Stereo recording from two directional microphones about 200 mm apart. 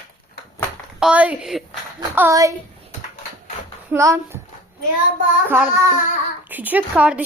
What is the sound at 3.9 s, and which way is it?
Speech, 15° right (ahead or behind).